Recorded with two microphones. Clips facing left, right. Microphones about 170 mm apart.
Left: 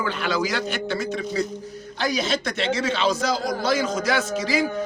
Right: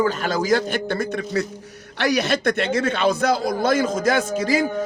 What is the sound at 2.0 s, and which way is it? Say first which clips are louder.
A man's voice: right 4 dB; 70° right (ahead or behind).